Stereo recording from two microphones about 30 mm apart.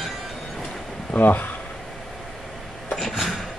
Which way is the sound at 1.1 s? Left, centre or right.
Left.